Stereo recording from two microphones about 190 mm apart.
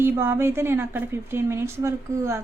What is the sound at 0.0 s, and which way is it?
A woman's voice, 10° right (ahead or behind).